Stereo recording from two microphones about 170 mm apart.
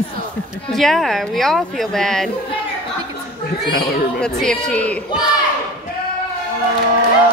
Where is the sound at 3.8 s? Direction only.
65° left (ahead or behind).